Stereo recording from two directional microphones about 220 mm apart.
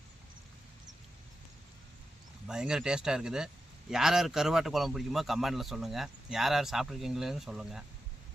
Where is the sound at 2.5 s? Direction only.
5° right (ahead or behind).